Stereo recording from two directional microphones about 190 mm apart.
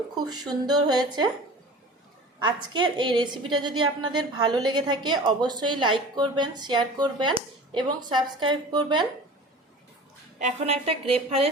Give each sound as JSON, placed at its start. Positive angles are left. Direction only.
{"t": 0.3, "sound": "a woman's voice", "side_deg": -20}
{"t": 2.4, "sound": "a woman's voice", "side_deg": -25}
{"t": 10.3, "sound": "a woman's voice", "side_deg": -35}